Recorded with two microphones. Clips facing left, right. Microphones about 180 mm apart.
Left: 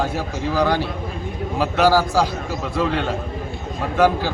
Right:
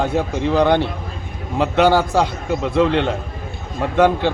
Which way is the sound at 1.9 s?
25° right (ahead or behind).